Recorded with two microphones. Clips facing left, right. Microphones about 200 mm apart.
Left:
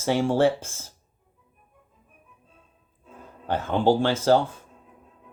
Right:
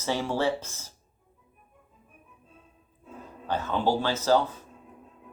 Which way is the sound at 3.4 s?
50° left (ahead or behind).